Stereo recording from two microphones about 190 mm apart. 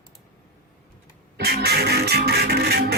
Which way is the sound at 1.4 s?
55° right (ahead or behind).